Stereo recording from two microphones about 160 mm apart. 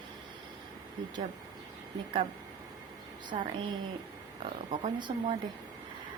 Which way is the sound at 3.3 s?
35° right (ahead or behind).